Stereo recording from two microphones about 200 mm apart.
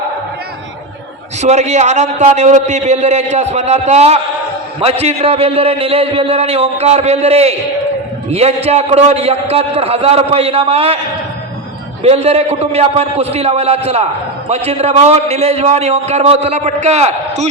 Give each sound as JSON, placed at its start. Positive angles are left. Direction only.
{"t": 1.4, "sound": "a man's voice", "side_deg": -35}
{"t": 12.0, "sound": "a man's voice", "side_deg": -30}